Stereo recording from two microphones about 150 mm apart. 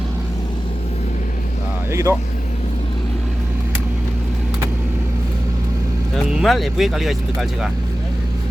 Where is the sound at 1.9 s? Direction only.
20° right (ahead or behind).